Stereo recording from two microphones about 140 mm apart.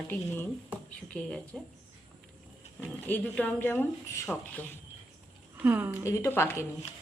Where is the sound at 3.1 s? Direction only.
10° left (ahead or behind).